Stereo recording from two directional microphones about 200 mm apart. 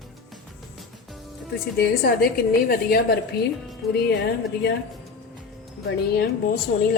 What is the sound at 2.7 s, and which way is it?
A woman's voice, 50° left (ahead or behind).